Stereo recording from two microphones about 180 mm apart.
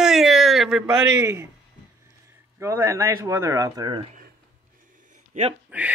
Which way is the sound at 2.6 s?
15° right (ahead or behind).